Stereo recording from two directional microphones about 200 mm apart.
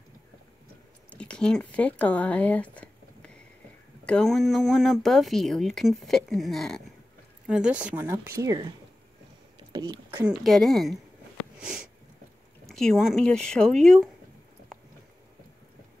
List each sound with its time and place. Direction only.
1.1 s a sound: 5° left (ahead or behind)
4.0 s speech: 5° left (ahead or behind); by 10.2 s 20° right (ahead or behind)
10.4 s speech: centre (ahead or behind)
12.6 s speech: centre (ahead or behind)